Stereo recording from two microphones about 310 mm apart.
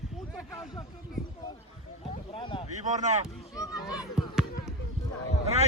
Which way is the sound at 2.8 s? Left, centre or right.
Right.